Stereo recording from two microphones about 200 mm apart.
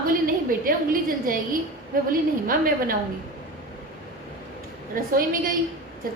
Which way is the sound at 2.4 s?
45° right (ahead or behind).